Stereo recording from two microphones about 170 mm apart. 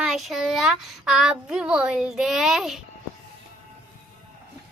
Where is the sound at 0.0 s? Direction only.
Centre (ahead or behind).